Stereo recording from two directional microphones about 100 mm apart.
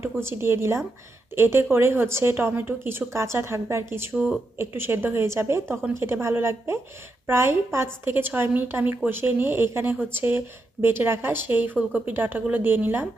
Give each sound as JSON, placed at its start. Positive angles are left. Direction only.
{"t": 0.0, "sound": "speech", "side_deg": -25}
{"t": 4.1, "sound": "speech", "side_deg": -5}
{"t": 4.5, "sound": "speech", "side_deg": -20}